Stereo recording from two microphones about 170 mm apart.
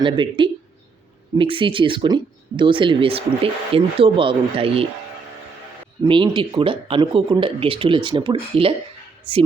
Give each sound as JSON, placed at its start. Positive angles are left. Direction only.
{"t": 0.0, "sound": "speech", "side_deg": -30}
{"t": 6.0, "sound": "speech", "side_deg": -25}